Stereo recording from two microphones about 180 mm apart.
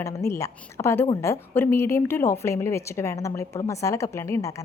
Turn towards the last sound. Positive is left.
turn(degrees=15)  # may be behind; listen again after turning